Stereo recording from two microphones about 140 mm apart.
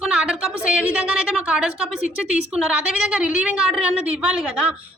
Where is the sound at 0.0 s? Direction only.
5° right (ahead or behind).